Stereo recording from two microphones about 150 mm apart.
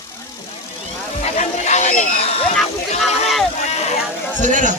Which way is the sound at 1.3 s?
50° left (ahead or behind).